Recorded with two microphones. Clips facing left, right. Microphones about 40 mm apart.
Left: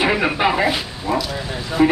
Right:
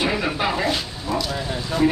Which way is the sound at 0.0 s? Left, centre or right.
Left.